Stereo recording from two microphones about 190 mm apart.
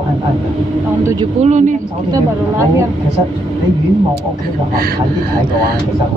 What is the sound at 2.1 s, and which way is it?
Speech, 15° right (ahead or behind).